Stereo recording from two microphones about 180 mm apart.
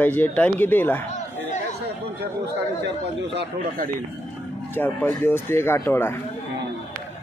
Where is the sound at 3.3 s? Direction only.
70° right (ahead or behind).